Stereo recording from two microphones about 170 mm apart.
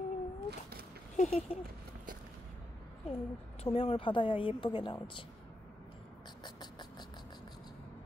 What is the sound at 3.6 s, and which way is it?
Speech, 35° left (ahead or behind).